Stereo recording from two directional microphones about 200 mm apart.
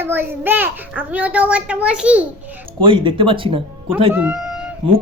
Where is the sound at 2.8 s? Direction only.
25° right (ahead or behind).